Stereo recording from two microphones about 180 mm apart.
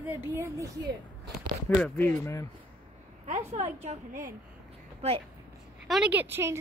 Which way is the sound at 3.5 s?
35° right (ahead or behind).